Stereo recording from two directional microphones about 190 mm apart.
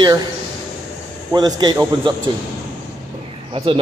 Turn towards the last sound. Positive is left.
turn(degrees=-30)  # may be behind; listen again after turning